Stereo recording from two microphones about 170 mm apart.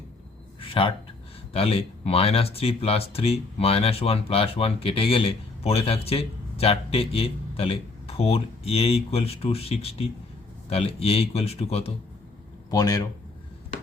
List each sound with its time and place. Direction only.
0.6 s a sound: 30° left (ahead or behind)
1.5 s speech: 35° left (ahead or behind)
12.7 s speech: 20° left (ahead or behind)